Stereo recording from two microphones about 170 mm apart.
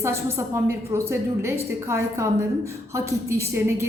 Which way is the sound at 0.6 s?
15° right (ahead or behind).